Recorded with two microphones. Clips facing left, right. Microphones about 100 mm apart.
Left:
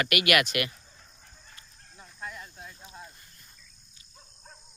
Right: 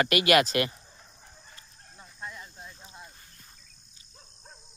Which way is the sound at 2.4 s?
10° right (ahead or behind).